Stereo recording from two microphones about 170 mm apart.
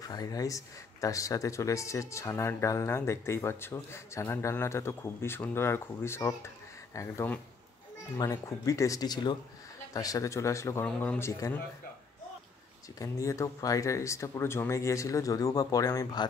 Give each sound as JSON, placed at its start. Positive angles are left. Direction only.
{"t": 0.0, "sound": "speech", "side_deg": 20}
{"t": 13.0, "sound": "speech", "side_deg": 20}